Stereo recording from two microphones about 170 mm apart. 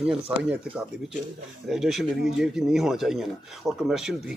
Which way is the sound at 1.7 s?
Centre (ahead or behind).